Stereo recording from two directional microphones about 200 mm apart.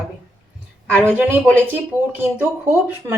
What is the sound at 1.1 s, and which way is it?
Speech, 10° right (ahead or behind).